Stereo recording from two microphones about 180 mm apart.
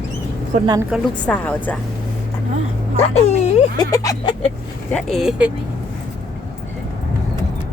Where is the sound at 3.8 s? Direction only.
20° left (ahead or behind).